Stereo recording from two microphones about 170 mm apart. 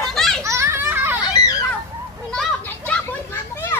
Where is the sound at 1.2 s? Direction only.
20° left (ahead or behind).